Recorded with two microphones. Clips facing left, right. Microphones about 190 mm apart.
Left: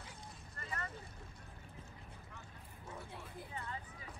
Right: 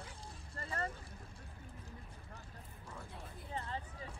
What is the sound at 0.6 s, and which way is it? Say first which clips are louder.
Vehicle: right 5 dB; 30° right (ahead or behind).